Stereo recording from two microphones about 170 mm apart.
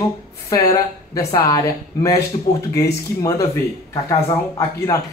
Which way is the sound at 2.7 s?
20° left (ahead or behind).